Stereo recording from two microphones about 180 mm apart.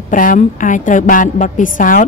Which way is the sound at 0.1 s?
50° left (ahead or behind).